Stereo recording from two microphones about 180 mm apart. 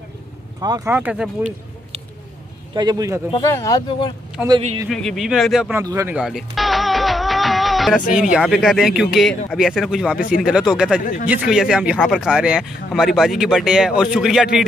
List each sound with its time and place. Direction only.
0.6 s speech: 20° right (ahead or behind)
2.7 s a man's voice: 25° right (ahead or behind)
3.3 s speech: 20° left (ahead or behind)
4.8 s speech: centre (ahead or behind); by 6.1 s 15° right (ahead or behind)
6.1 s music: centre (ahead or behind)
8.1 s speech: 5° right (ahead or behind)